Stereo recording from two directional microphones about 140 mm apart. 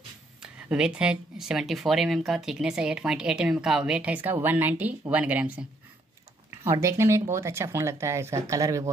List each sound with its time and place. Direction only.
0.4 s speech: 5° right (ahead or behind); by 8.9 s 25° right (ahead or behind)